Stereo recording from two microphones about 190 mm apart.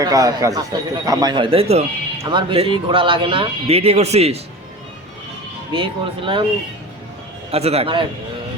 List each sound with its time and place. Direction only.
0.0 s a man's voice: 20° right (ahead or behind)
5.7 s a man's voice: 25° right (ahead or behind)
7.5 s a man's voice: 35° right (ahead or behind)